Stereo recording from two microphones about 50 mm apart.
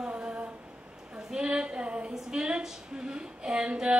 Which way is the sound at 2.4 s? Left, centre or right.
Centre.